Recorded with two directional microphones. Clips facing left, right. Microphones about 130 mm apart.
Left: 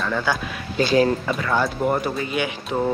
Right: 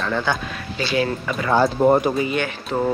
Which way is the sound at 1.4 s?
30° right (ahead or behind).